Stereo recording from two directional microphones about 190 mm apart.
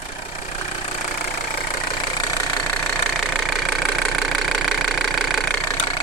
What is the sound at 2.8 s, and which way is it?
Vehicle, 5° left (ahead or behind).